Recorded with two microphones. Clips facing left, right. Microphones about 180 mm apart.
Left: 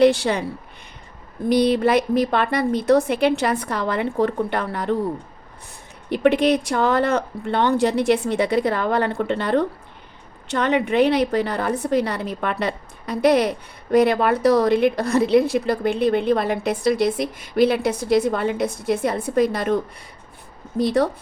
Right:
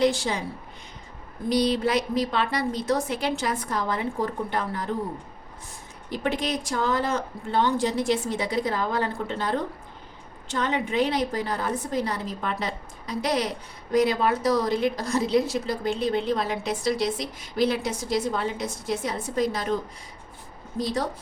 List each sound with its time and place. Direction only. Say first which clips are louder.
0.0 s a woman's voice: left 7 dB; 65° left (ahead or behind)
1.5 s a woman's voice: left 6 dB; 55° left (ahead or behind)
6.1 s a woman's voice: left 10 dB; 65° left (ahead or behind)